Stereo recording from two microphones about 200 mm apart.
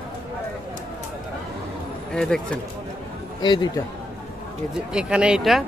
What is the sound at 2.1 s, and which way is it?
Speech, 5° left (ahead or behind).